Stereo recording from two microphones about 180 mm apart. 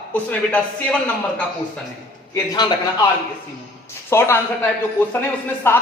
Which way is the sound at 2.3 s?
20° left (ahead or behind).